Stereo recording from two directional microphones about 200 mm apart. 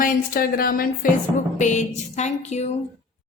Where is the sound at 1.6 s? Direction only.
35° left (ahead or behind).